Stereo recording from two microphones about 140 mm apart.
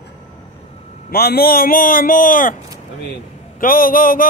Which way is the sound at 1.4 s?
90° left.